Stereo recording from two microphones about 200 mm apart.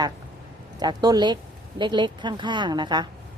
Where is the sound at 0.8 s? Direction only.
20° right (ahead or behind).